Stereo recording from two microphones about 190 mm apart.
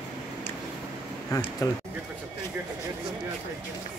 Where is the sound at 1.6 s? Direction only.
20° left (ahead or behind).